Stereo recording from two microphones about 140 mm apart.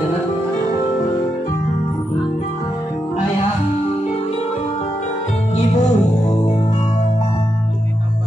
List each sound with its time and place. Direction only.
5.6 s music: 50° left (ahead or behind)